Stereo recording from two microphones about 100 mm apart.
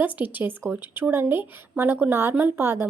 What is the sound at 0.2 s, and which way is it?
A woman's voice, 20° right (ahead or behind).